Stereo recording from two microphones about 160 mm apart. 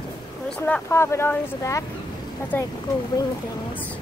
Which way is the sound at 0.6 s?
15° left (ahead or behind).